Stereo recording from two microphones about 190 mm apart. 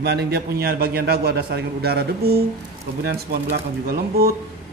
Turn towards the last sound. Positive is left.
turn(degrees=-50)  # may be behind; listen again after turning